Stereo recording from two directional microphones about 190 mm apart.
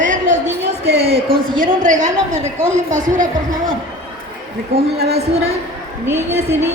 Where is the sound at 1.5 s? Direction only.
45° right (ahead or behind).